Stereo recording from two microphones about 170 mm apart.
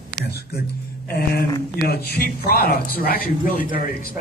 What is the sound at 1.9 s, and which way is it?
Speech, 65° left (ahead or behind).